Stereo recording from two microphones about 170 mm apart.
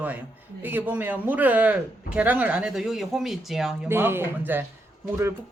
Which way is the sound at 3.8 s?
15° right (ahead or behind).